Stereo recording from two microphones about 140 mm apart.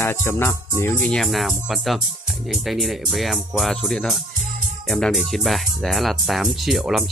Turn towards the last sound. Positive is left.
turn(degrees=0)  # may be behind; listen again after turning